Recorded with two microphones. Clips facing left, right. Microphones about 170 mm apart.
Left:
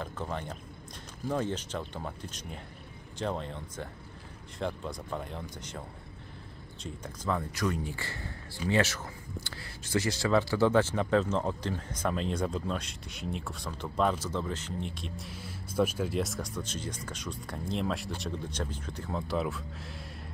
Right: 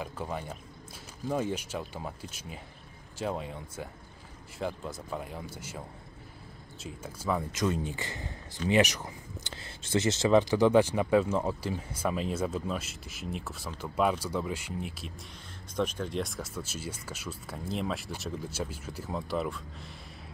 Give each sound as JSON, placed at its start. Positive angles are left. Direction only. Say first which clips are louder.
{"t": 0.0, "sound": "speech", "louder": "even", "side_deg": -10}
{"t": 6.8, "sound": "speech", "louder": "even", "side_deg": -5}
{"t": 7.5, "sound": "speech", "louder": "right 2 dB", "side_deg": -25}